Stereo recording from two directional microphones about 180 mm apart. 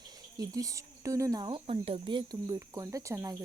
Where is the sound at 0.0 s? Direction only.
20° right (ahead or behind).